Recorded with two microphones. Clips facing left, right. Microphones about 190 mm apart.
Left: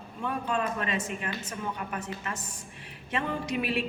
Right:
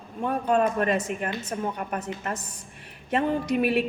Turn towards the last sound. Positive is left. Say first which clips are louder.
# right 7 dB
turn(degrees=-55)  # may be behind; listen again after turning